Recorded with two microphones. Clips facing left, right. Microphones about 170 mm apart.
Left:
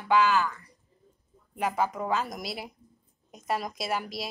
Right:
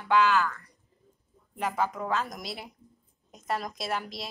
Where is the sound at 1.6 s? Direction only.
5° left (ahead or behind).